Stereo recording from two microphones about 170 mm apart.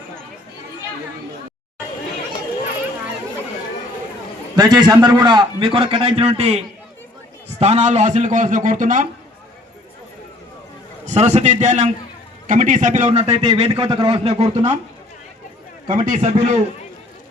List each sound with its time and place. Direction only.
4.5 s a man's voice: 25° right (ahead or behind); by 9.0 s 50° right (ahead or behind)
11.0 s a man's voice: 40° right (ahead or behind)
15.9 s a man's voice: 50° right (ahead or behind)